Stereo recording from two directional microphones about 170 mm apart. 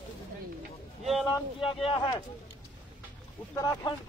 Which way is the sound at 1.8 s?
30° left (ahead or behind).